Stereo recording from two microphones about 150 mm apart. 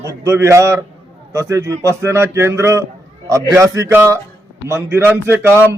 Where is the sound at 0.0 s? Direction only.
20° right (ahead or behind).